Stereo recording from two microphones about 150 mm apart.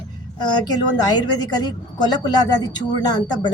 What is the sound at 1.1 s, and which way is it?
A woman's voice, 25° left (ahead or behind).